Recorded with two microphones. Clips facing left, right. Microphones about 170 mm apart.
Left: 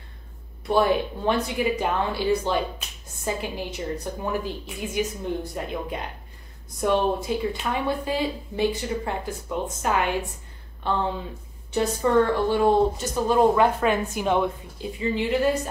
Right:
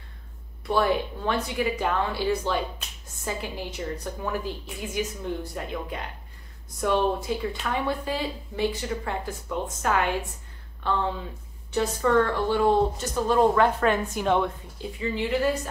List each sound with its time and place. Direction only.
0.7 s speech: 20° left (ahead or behind)
14.8 s speech: 20° left (ahead or behind)